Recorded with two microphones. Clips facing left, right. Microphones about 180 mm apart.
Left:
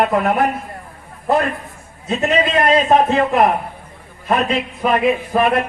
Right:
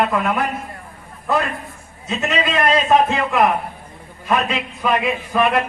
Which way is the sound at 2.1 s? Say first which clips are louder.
Left 4 dB; 40° left (ahead or behind).